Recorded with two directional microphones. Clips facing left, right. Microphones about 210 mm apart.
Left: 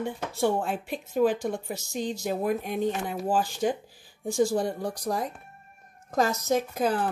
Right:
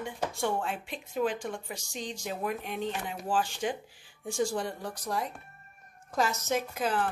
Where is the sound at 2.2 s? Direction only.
40° left (ahead or behind).